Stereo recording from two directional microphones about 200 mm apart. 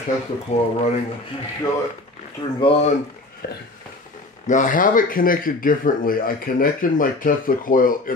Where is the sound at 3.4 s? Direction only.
50° left (ahead or behind).